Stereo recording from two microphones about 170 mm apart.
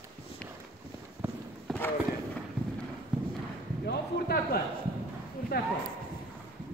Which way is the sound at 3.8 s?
65° left (ahead or behind).